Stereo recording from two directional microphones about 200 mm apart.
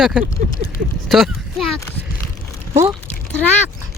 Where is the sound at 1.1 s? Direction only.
Centre (ahead or behind).